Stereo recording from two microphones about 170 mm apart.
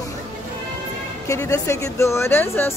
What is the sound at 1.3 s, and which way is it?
A woman's voice, 15° left (ahead or behind).